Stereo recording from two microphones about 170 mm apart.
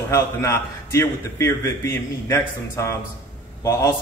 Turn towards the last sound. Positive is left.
turn(degrees=15)  # may be behind; listen again after turning